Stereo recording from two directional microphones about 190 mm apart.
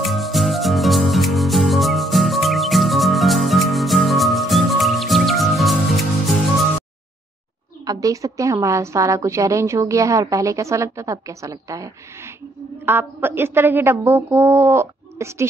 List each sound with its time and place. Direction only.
0.0 s music: centre (ahead or behind)
7.8 s a woman's voice: 20° right (ahead or behind)